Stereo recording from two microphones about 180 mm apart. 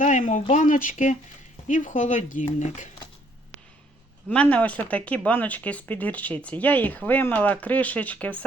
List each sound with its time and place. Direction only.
0.0 s speech: 45° left (ahead or behind)
4.3 s speech: 10° left (ahead or behind)